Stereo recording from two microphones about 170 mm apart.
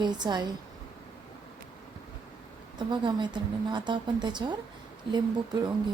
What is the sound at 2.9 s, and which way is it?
Speech, 25° right (ahead or behind).